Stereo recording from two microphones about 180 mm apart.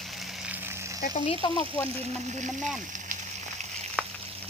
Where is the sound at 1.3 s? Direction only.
30° left (ahead or behind).